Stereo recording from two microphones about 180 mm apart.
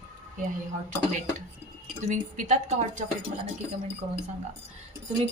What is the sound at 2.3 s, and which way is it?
Speech, 40° right (ahead or behind).